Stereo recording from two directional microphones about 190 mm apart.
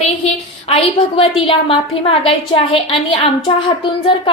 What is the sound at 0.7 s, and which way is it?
A woman's voice, 30° left (ahead or behind).